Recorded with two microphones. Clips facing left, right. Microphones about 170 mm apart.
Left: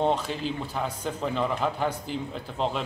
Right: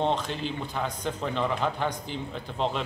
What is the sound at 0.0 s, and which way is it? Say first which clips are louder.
A man's voice: left 2 dB; 5° left (ahead or behind).